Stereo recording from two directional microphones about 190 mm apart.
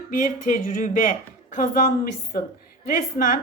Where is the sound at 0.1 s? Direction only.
45° left (ahead or behind).